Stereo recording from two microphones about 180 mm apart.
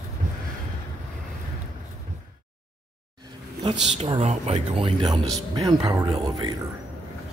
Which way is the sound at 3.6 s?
30° right (ahead or behind).